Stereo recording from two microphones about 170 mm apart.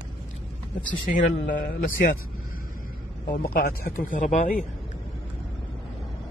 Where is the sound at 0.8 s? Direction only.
50° left (ahead or behind).